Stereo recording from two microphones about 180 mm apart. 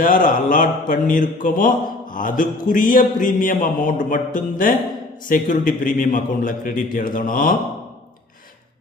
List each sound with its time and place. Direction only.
0.0 s speech: 50° left (ahead or behind)